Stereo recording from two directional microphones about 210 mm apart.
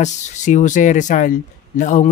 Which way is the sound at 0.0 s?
35° left (ahead or behind).